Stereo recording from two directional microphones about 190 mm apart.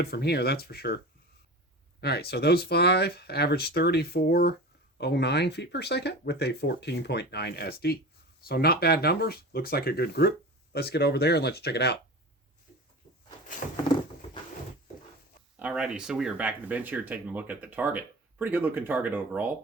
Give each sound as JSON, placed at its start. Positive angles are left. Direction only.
{"t": 0.0, "sound": "speech", "side_deg": 60}
{"t": 2.0, "sound": "speech", "side_deg": 60}
{"t": 15.5, "sound": "speech", "side_deg": -5}